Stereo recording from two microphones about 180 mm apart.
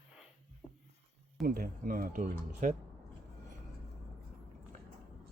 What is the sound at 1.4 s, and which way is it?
Speech, 50° right (ahead or behind).